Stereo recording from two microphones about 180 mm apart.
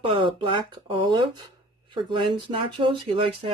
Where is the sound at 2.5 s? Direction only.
30° right (ahead or behind).